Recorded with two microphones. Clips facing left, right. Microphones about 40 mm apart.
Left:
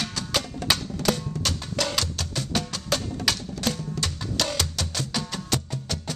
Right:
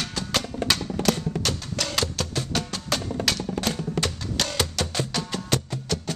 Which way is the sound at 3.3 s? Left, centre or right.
Centre.